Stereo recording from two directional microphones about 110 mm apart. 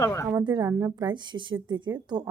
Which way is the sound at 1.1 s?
45° right (ahead or behind).